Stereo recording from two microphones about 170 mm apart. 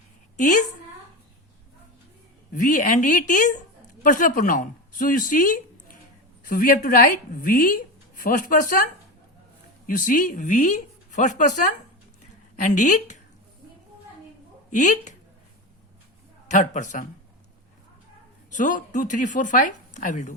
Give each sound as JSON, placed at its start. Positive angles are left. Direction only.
{"t": 0.3, "sound": "a woman's voice", "side_deg": 50}
{"t": 2.5, "sound": "a woman's voice", "side_deg": 50}
{"t": 9.8, "sound": "a woman's voice", "side_deg": 55}
{"t": 14.7, "sound": "a woman's voice", "side_deg": 45}
{"t": 16.5, "sound": "a woman's voice", "side_deg": 45}
{"t": 18.5, "sound": "a woman's voice", "side_deg": 50}